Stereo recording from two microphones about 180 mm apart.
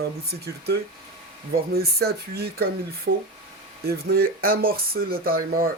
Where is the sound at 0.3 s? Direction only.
60° right (ahead or behind).